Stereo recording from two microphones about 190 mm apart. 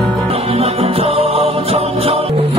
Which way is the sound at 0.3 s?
30° right (ahead or behind).